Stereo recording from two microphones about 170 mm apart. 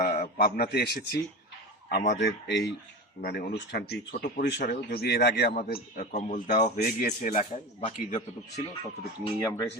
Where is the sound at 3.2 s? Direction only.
65° left (ahead or behind).